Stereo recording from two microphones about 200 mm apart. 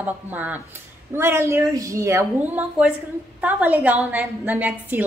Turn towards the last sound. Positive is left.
turn(degrees=-10)  # may be behind; listen again after turning